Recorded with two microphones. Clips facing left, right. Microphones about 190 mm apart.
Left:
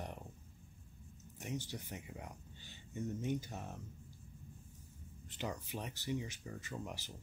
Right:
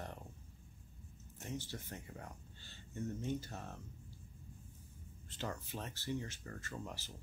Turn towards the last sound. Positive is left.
turn(degrees=15)  # may be behind; listen again after turning